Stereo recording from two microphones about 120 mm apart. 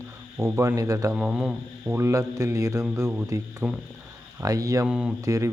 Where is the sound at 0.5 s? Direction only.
25° right (ahead or behind).